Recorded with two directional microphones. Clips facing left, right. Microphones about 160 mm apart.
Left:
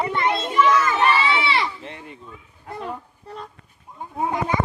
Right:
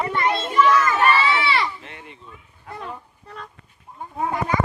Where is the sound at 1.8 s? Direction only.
35° left (ahead or behind).